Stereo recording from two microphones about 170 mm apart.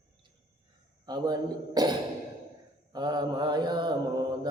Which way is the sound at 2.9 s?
25° right (ahead or behind).